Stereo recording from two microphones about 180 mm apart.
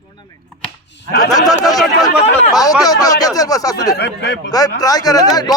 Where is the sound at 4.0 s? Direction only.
65° left (ahead or behind).